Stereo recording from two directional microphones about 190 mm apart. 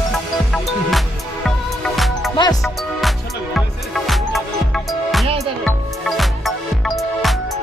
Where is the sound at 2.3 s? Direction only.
20° left (ahead or behind).